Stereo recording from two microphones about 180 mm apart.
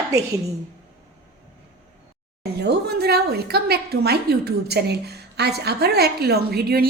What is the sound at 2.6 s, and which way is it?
A woman's voice, 65° right (ahead or behind).